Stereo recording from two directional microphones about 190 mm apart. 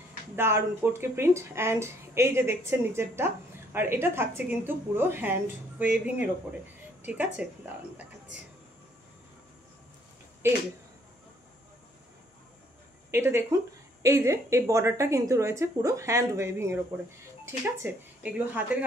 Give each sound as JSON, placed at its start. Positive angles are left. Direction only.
{"t": 0.4, "sound": "a woman's voice", "side_deg": -15}
{"t": 7.4, "sound": "speech", "side_deg": -5}
{"t": 13.1, "sound": "a woman's voice", "side_deg": -15}